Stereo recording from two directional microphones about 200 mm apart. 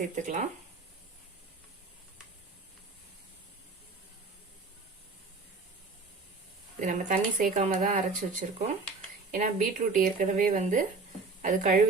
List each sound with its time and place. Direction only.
0.0 s speech: 40° right (ahead or behind)
6.7 s speech: 40° right (ahead or behind)